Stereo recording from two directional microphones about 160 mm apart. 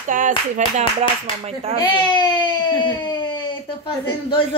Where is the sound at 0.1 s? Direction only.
55° right (ahead or behind); by 1.8 s 40° right (ahead or behind).